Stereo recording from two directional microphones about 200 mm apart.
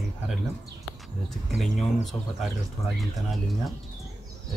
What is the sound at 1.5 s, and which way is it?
Speech, centre (ahead or behind).